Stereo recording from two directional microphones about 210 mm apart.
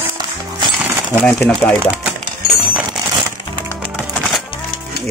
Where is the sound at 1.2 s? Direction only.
5° left (ahead or behind).